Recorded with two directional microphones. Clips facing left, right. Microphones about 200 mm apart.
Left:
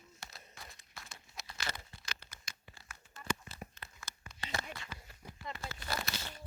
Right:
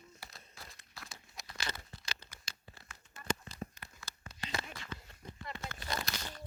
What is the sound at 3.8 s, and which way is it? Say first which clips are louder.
Crumpling: even; 15° right (ahead or behind).